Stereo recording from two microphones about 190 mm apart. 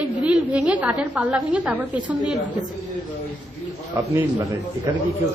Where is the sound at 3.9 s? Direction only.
15° right (ahead or behind).